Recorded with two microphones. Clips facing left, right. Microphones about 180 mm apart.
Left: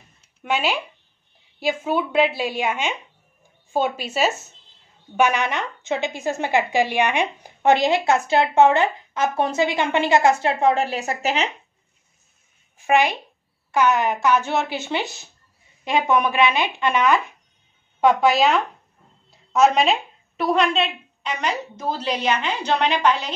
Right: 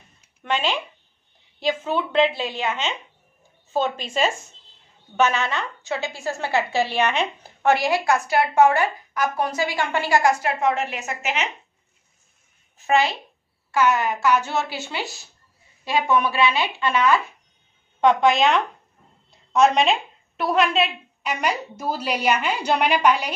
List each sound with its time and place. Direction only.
0.4 s a woman's voice: 10° left (ahead or behind); by 11.5 s 35° left (ahead or behind)
12.7 s a woman's voice: 15° left (ahead or behind)
18.0 s a woman's voice: 5° left (ahead or behind)